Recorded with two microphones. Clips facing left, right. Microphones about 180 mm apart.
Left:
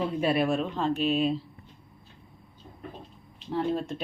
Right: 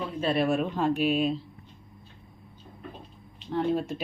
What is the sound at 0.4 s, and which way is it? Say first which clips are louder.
Speech: right 1 dB; 10° right (ahead or behind).